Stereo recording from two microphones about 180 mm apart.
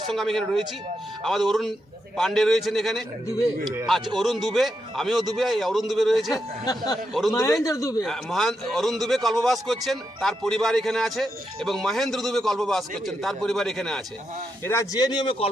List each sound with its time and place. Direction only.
0.1 s a man's voice: centre (ahead or behind)
4.2 s a man's voice: centre (ahead or behind)
6.3 s a man's voice: 20° left (ahead or behind)
7.1 s a man's voice: centre (ahead or behind)
7.6 s a man's voice: 20° left (ahead or behind)
8.0 s a man's voice: centre (ahead or behind)
14.6 s a man's voice: 15° left (ahead or behind)